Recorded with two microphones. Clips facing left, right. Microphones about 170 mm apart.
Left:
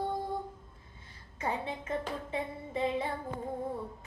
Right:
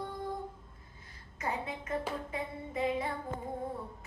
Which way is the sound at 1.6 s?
30° left (ahead or behind).